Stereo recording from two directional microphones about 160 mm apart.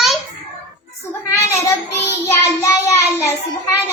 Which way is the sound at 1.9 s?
20° left (ahead or behind).